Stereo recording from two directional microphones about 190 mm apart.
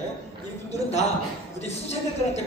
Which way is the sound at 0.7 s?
35° left (ahead or behind).